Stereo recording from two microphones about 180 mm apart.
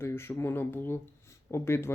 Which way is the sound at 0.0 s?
15° left (ahead or behind).